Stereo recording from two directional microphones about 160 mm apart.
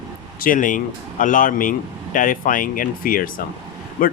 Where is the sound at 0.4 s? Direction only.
55° left (ahead or behind).